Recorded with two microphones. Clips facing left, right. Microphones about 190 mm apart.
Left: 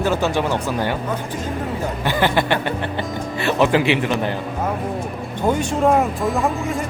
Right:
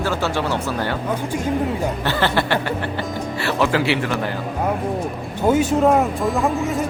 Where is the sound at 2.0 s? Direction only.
15° left (ahead or behind).